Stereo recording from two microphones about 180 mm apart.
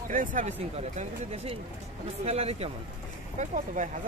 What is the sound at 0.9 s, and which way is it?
Speech, 35° right (ahead or behind).